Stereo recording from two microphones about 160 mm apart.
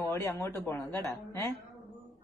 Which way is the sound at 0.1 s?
15° left (ahead or behind).